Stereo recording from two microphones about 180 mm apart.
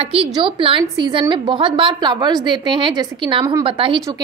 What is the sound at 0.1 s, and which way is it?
A woman's voice, 30° right (ahead or behind).